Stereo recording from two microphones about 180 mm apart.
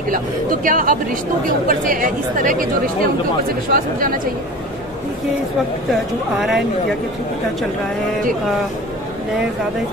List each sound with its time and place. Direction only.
0.1 s speech: 50° right (ahead or behind)
3.7 s speech: 50° right (ahead or behind)
6.4 s speech: centre (ahead or behind)